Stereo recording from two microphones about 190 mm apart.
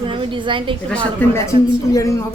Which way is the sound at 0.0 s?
25° right (ahead or behind).